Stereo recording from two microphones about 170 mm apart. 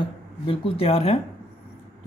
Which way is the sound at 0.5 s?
35° left (ahead or behind).